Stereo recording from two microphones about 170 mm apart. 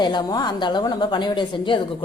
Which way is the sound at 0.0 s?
25° left (ahead or behind).